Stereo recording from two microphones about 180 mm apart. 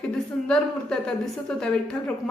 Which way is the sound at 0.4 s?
5° left (ahead or behind).